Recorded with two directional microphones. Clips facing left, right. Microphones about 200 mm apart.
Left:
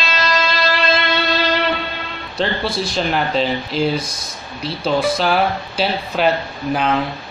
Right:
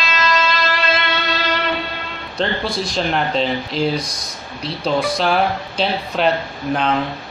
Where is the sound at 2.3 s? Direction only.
5° left (ahead or behind).